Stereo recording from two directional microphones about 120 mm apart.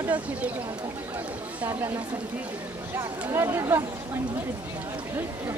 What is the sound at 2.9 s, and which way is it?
Speech, 20° right (ahead or behind).